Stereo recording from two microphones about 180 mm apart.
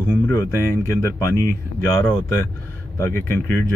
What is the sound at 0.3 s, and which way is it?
Speech, 15° left (ahead or behind).